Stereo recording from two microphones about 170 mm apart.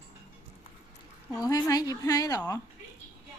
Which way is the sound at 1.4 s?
20° left (ahead or behind).